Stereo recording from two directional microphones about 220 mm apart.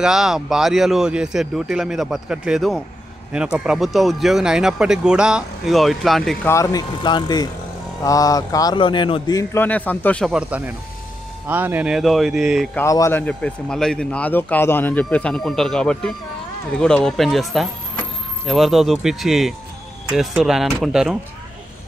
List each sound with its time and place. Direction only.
0.0 s speech: centre (ahead or behind)
6.5 s a man's voice: 15° left (ahead or behind); by 12.6 s centre (ahead or behind)
12.7 s speech: 15° left (ahead or behind); by 21.2 s 5° right (ahead or behind)